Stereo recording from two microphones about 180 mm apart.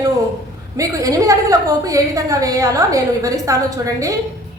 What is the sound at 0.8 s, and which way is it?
A woman's voice, 20° right (ahead or behind).